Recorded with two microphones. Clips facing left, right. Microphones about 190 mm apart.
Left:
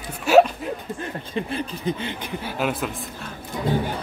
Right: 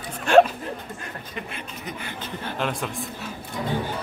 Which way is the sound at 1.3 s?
30° left (ahead or behind).